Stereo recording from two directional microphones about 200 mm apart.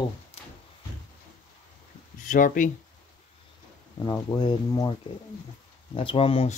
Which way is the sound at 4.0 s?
20° left (ahead or behind).